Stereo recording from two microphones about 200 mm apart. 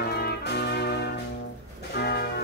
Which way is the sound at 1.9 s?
55° left (ahead or behind).